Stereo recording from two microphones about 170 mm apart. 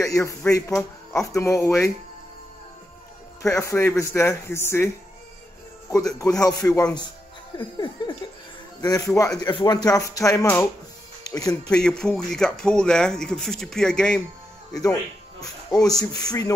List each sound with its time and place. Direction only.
0.0 s speech: 20° left (ahead or behind)
3.5 s speech: 15° left (ahead or behind)
6.7 s speech: 5° left (ahead or behind)
7.5 s speech: 25° left (ahead or behind)
11.7 s a man's voice: 5° left (ahead or behind)
14.7 s speech: 20° left (ahead or behind)